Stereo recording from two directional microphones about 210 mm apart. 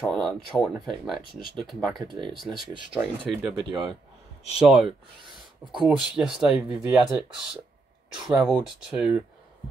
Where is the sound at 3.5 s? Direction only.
20° right (ahead or behind).